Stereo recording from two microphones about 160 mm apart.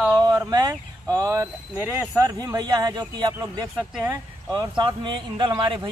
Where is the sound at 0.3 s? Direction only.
25° right (ahead or behind).